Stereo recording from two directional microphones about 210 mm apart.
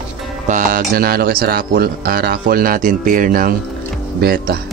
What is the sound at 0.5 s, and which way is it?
A man's voice, 40° right (ahead or behind).